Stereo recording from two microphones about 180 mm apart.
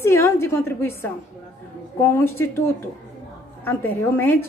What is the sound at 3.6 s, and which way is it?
Speech, 10° left (ahead or behind).